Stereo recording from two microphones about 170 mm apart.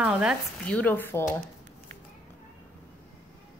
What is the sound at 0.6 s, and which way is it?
Dishes, 10° left (ahead or behind).